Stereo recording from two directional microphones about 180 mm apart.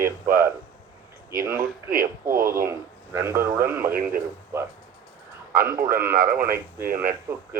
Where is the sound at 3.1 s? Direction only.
15° right (ahead or behind).